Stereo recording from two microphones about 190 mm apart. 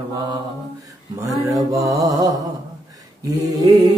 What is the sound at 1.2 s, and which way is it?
Mantra, 15° right (ahead or behind).